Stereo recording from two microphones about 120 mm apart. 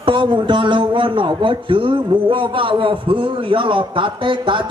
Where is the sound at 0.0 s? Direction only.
45° right (ahead or behind).